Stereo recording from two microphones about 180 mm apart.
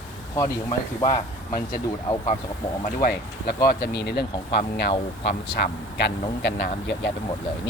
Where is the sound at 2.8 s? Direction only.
55° left (ahead or behind).